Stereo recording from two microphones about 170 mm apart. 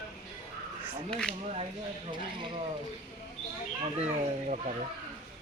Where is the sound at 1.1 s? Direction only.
5° left (ahead or behind).